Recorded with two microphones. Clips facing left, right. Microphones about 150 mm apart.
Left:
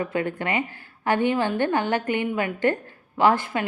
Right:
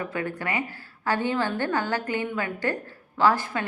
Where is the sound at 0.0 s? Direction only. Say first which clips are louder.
Left 4 dB; 20° left (ahead or behind).